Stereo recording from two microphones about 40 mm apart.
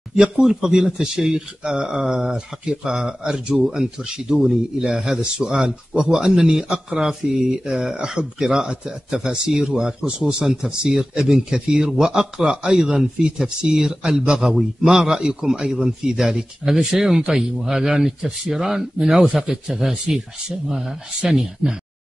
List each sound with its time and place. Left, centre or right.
0.2 s speech: centre
19.2 s a man's voice: right